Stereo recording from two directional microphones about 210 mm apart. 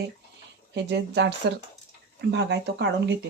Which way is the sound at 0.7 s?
55° right (ahead or behind).